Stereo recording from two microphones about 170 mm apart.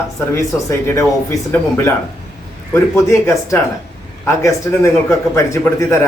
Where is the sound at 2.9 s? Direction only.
20° left (ahead or behind).